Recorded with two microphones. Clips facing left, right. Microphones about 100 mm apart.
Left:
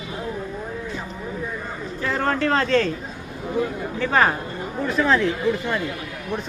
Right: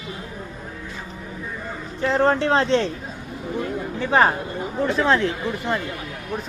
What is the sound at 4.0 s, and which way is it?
Speech, 20° right (ahead or behind).